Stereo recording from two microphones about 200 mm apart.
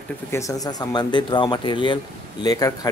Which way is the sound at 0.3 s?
15° left (ahead or behind).